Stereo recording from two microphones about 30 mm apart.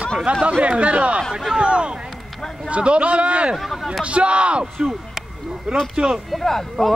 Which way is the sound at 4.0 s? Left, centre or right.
Right.